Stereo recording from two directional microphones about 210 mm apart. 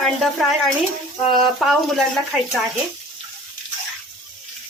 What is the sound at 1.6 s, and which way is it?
Speech, centre (ahead or behind).